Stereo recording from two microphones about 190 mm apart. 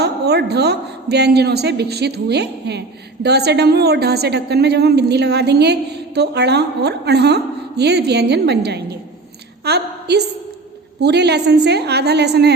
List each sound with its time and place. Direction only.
0.0 s a woman's voice: 60° right (ahead or behind)
9.6 s a sound: 60° right (ahead or behind)
11.0 s a woman's voice: 60° right (ahead or behind)